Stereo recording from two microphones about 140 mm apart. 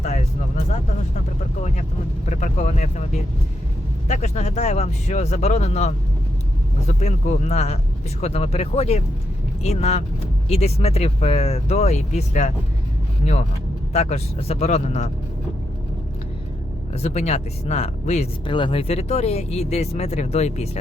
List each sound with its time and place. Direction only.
0.0 s vehicle: 55° left (ahead or behind)
2.3 s speech: 60° left (ahead or behind)
16.9 s speech: 50° left (ahead or behind)
18.4 s speech: 35° left (ahead or behind); by 20.7 s 50° left (ahead or behind)